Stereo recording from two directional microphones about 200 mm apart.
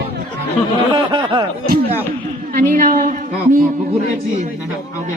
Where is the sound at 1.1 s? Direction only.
25° right (ahead or behind).